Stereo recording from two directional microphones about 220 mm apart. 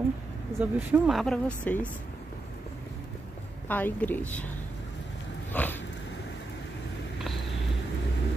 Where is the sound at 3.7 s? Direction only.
10° left (ahead or behind).